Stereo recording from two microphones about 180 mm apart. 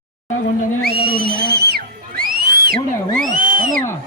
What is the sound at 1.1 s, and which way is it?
Music, 60° right (ahead or behind).